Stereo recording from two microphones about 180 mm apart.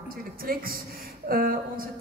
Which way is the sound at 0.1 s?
55° right (ahead or behind).